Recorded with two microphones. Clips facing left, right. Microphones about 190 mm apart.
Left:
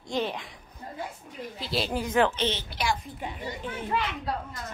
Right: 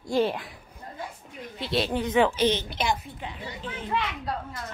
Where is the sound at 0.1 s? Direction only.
5° right (ahead or behind).